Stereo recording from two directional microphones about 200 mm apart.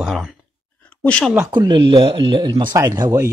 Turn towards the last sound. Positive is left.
turn(degrees=-15)  # may be behind; listen again after turning